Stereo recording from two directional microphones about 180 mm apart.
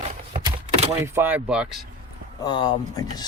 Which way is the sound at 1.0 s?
15° right (ahead or behind).